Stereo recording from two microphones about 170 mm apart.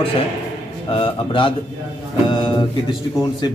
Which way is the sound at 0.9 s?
30° left (ahead or behind).